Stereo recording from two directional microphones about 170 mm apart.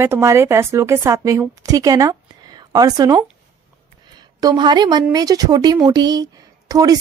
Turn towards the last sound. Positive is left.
turn(degrees=-20)  # may be behind; listen again after turning